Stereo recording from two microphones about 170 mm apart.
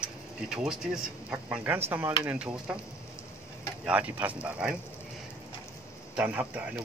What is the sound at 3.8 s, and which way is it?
Speech, 10° right (ahead or behind).